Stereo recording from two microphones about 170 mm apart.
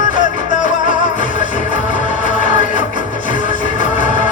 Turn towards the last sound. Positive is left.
turn(degrees=45)  # may be behind; listen again after turning